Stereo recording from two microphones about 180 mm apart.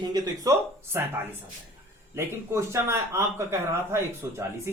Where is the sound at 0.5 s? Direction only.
20° right (ahead or behind).